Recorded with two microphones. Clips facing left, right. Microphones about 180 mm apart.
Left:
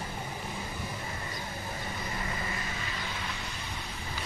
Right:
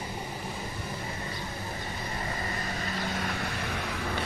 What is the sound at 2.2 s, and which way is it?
Vehicle, 40° right (ahead or behind).